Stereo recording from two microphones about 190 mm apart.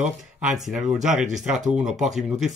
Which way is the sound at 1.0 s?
Centre (ahead or behind).